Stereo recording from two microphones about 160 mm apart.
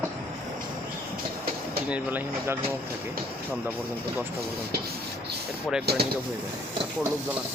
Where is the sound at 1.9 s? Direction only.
10° right (ahead or behind).